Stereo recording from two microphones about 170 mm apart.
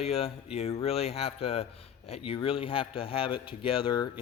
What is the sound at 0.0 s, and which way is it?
Speech, 35° left (ahead or behind).